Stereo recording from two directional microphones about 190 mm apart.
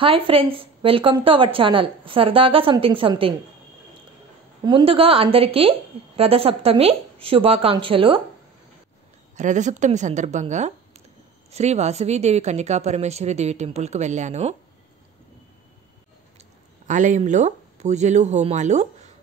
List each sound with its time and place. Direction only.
0.0 s a woman's voice: 30° right (ahead or behind)
4.6 s a woman's voice: 25° right (ahead or behind)
9.4 s speech: 40° right (ahead or behind)
16.8 s speech: 40° right (ahead or behind)